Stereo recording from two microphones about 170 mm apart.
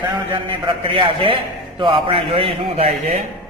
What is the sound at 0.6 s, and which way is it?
A man's voice, 30° right (ahead or behind).